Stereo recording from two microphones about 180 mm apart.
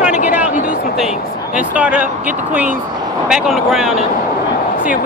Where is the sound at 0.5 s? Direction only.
45° left (ahead or behind).